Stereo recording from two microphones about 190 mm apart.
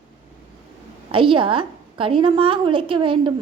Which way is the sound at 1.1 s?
25° right (ahead or behind).